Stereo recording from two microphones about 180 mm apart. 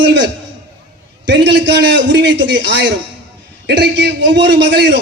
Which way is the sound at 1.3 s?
75° right (ahead or behind).